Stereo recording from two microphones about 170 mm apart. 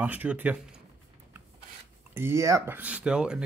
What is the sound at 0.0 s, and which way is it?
Speech, 10° right (ahead or behind).